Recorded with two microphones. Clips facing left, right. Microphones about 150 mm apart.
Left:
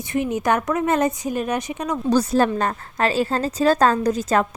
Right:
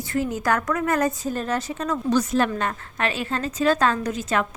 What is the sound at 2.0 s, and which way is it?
A woman's voice, 35° left (ahead or behind).